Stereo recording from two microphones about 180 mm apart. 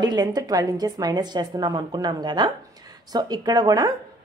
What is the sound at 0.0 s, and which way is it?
A woman's voice, 25° right (ahead or behind).